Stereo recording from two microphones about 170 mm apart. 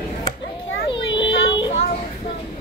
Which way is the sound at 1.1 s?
25° left (ahead or behind).